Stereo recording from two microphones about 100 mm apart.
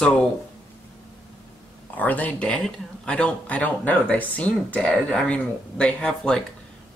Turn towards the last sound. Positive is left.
turn(degrees=10)  # may be behind; listen again after turning